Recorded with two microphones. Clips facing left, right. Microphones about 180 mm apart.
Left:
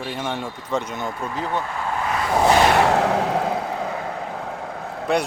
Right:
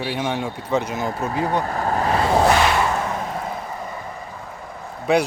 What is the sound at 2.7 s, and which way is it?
Vehicle, 75° left (ahead or behind).